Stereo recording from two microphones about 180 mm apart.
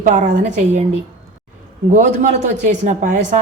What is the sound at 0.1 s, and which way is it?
Speech, 40° right (ahead or behind).